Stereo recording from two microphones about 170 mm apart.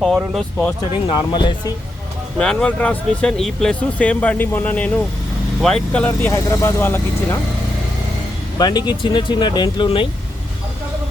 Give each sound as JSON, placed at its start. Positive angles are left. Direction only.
{"t": 0.0, "sound": "speech", "side_deg": 0}
{"t": 1.0, "sound": "speech", "side_deg": 25}
{"t": 2.4, "sound": "speech", "side_deg": 5}
{"t": 6.2, "sound": "speech", "side_deg": 15}
{"t": 8.5, "sound": "speech", "side_deg": 25}